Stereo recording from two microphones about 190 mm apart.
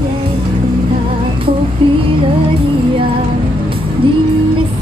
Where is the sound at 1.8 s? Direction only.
30° right (ahead or behind).